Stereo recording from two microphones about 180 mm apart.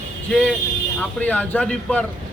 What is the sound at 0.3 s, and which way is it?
Speech, 5° left (ahead or behind).